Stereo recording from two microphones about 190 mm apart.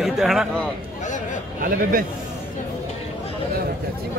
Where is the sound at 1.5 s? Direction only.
45° right (ahead or behind).